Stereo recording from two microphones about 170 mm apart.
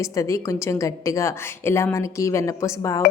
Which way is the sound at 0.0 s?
20° left (ahead or behind).